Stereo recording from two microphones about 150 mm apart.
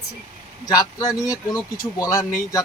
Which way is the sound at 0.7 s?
25° left (ahead or behind).